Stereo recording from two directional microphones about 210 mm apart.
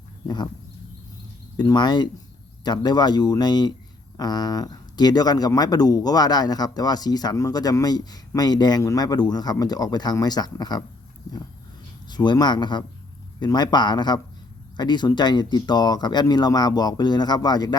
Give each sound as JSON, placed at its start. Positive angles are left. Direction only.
{"t": 0.3, "sound": "speech", "side_deg": 20}
{"t": 1.5, "sound": "speech", "side_deg": 20}
{"t": 12.0, "sound": "speech", "side_deg": 20}